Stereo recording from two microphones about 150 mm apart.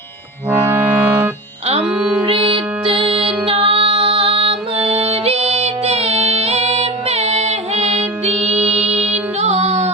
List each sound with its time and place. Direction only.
0.6 s music: 15° right (ahead or behind)
2.2 s music: 35° right (ahead or behind)